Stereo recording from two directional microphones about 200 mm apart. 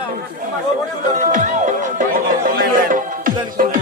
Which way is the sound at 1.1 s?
40° right (ahead or behind).